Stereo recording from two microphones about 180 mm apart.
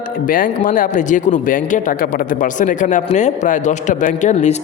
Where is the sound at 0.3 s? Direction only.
50° left (ahead or behind).